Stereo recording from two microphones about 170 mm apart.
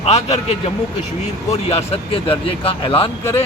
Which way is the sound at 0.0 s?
40° left (ahead or behind).